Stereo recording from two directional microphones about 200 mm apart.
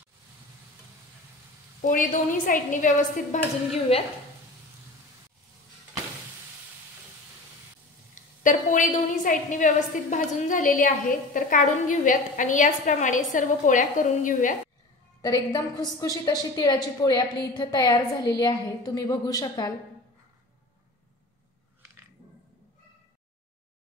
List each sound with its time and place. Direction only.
1.8 s a woman's voice: 40° left (ahead or behind)
3.9 s a woman's voice: 30° left (ahead or behind)
8.1 s a woman's voice: 40° left (ahead or behind)
15.2 s a woman's voice: 20° left (ahead or behind)